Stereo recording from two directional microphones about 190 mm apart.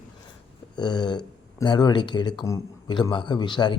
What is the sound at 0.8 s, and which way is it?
Speech, 20° left (ahead or behind).